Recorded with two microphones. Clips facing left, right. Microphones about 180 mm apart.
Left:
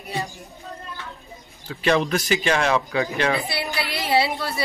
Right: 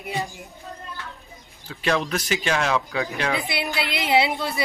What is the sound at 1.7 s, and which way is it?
Speech, centre (ahead or behind).